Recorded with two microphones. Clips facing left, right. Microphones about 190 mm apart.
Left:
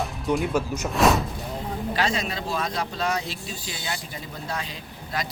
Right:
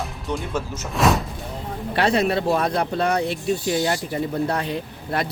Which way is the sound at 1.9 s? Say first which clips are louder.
Right 9 dB; 60° right (ahead or behind).